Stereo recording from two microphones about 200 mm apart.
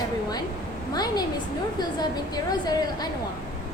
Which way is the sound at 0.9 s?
20° left (ahead or behind).